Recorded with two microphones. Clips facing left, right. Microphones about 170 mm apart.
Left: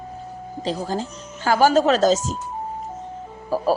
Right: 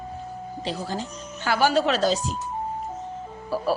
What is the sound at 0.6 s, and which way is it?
A woman's voice, 40° left (ahead or behind).